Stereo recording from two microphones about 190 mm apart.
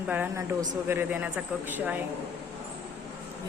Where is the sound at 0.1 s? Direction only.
10° right (ahead or behind).